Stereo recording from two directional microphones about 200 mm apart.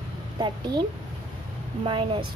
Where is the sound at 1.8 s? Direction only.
25° right (ahead or behind).